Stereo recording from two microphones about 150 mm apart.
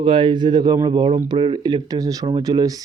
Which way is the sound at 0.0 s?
35° right (ahead or behind).